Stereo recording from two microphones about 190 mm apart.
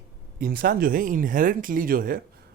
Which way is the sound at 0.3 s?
50° right (ahead or behind).